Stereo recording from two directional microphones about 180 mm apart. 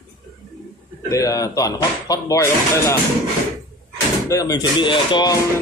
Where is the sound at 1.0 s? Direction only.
20° left (ahead or behind).